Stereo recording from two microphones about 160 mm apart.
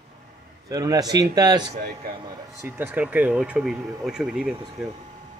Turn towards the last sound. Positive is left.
turn(degrees=-5)  # may be behind; listen again after turning